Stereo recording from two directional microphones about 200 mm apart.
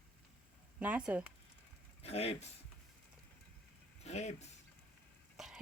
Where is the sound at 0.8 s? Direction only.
5° right (ahead or behind).